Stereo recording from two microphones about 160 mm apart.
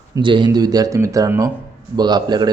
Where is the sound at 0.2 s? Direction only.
30° right (ahead or behind).